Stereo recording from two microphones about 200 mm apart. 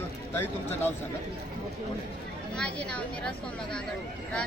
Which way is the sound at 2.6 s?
5° left (ahead or behind).